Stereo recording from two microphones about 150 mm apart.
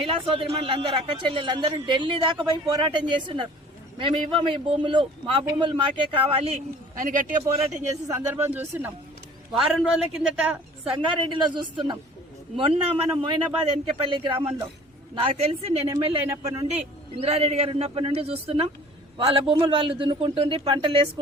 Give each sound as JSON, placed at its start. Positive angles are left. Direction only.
{"t": 0.0, "sound": "a man's voice", "side_deg": -40}
{"t": 6.9, "sound": "speech", "side_deg": -60}
{"t": 7.8, "sound": "speech", "side_deg": -20}
{"t": 9.5, "sound": "a woman's voice", "side_deg": 0}
{"t": 10.9, "sound": "a man's voice", "side_deg": -35}
{"t": 16.3, "sound": "a man's voice", "side_deg": -20}
{"t": 17.2, "sound": "a man's voice", "side_deg": -40}